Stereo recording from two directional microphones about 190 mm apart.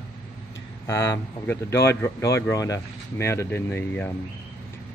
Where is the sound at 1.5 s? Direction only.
15° left (ahead or behind).